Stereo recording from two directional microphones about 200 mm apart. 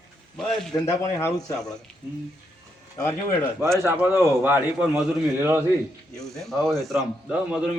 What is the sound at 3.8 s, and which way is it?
A man's voice, 10° right (ahead or behind).